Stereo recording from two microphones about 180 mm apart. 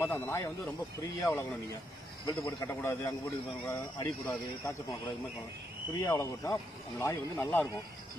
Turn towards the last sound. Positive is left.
turn(degrees=10)  # may be behind; listen again after turning